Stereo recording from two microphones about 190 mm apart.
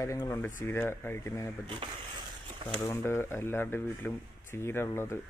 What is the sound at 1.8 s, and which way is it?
Speech, 25° right (ahead or behind).